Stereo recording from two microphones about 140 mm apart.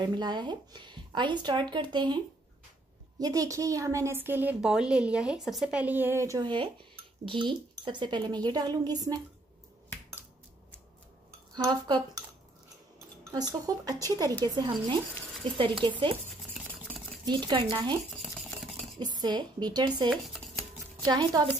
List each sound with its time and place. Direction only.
0.0 s a woman's voice: 30° right (ahead or behind)
6.4 s speech: 35° right (ahead or behind)
11.5 s speech: 30° right (ahead or behind)
13.3 s speech: 25° right (ahead or behind)
16.5 s stir: 10° right (ahead or behind)
17.2 s speech: 30° right (ahead or behind)
18.2 s toothbrush: centre (ahead or behind)
18.9 s speech: 30° right (ahead or behind)
20.1 s a sound: centre (ahead or behind)
21.0 s speech: 30° right (ahead or behind)